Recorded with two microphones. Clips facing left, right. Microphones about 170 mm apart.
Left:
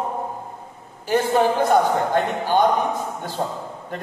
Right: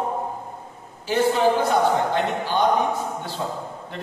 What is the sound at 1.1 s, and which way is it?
Speech, 50° left (ahead or behind).